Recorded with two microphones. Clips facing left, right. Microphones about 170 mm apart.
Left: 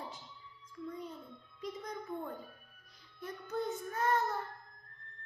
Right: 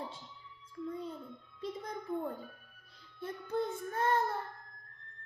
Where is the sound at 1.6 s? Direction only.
30° right (ahead or behind).